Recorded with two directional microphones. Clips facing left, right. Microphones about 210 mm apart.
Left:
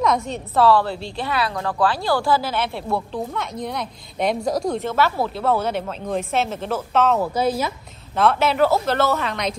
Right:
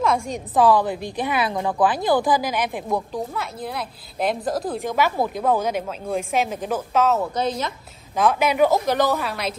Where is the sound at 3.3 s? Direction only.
5° right (ahead or behind).